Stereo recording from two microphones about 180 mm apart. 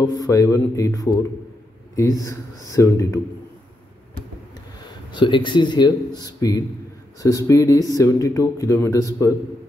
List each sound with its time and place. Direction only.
0.0 s a man's voice: 20° left (ahead or behind)
2.7 s speech: 15° left (ahead or behind)
5.1 s a man's voice: 25° left (ahead or behind)